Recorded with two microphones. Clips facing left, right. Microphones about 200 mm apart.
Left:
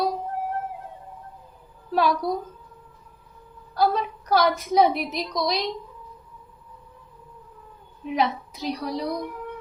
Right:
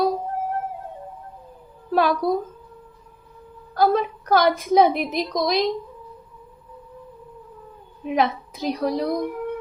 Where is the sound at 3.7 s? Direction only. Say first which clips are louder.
Right 4 dB; 50° right (ahead or behind).